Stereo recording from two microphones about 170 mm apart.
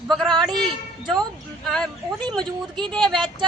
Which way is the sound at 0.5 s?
25° right (ahead or behind).